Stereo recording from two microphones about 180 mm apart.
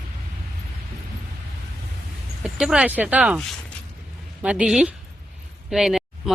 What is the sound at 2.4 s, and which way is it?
Speech, 5° right (ahead or behind).